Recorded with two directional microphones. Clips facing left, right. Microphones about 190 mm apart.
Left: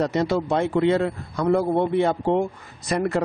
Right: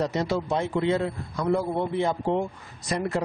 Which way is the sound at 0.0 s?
60° left (ahead or behind).